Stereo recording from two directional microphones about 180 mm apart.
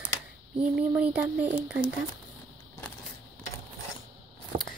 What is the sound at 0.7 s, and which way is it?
Speech, 5° right (ahead or behind).